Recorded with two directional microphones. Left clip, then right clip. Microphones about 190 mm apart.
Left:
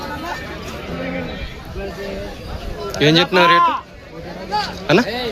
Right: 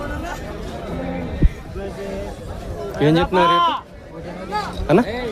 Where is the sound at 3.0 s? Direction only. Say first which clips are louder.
Left 3 dB; 10° right (ahead or behind).